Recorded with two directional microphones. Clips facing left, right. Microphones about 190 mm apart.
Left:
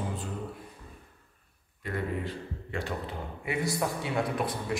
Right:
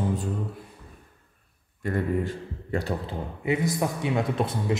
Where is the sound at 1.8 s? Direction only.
45° right (ahead or behind).